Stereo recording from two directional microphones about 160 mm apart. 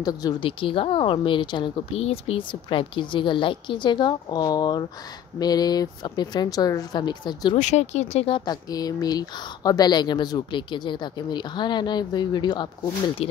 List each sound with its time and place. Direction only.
0.0 s a woman's voice: 25° left (ahead or behind)
7.5 s speech: 45° left (ahead or behind)
8.5 s speech: 25° left (ahead or behind)
13.2 s speech: 35° left (ahead or behind)